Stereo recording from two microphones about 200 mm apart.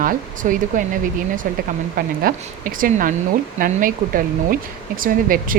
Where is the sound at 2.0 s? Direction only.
45° right (ahead or behind).